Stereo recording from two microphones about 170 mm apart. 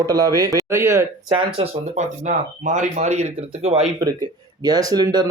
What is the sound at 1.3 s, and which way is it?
Speech, 35° right (ahead or behind).